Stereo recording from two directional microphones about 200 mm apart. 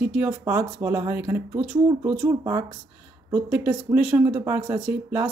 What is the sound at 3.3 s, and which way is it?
Speech, 5° right (ahead or behind).